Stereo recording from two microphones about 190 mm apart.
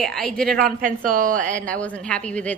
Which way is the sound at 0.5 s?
45° right (ahead or behind).